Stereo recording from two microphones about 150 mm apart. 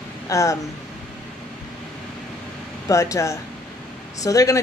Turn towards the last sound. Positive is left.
turn(degrees=20)  # may be behind; listen again after turning